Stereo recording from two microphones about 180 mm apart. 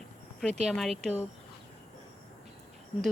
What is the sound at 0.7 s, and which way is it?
Speech, centre (ahead or behind).